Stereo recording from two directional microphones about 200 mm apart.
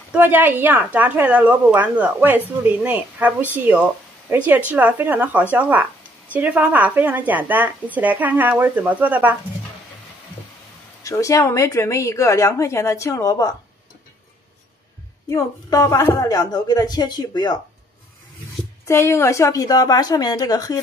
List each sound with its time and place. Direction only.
0.1 s a woman's voice: 10° right (ahead or behind)
11.1 s a woman's voice: 15° left (ahead or behind)
15.2 s a woman's voice: 15° left (ahead or behind)
18.9 s a woman's voice: 15° left (ahead or behind)